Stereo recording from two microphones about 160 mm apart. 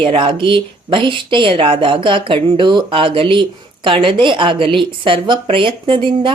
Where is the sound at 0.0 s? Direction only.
35° right (ahead or behind).